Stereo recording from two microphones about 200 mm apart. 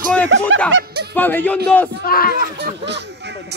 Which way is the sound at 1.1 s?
10° left (ahead or behind).